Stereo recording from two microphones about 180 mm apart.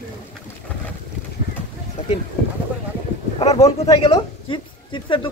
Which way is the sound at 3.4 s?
35° left (ahead or behind).